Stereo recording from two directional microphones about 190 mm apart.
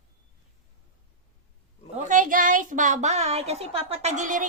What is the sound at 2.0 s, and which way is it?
A woman's voice, 45° right (ahead or behind).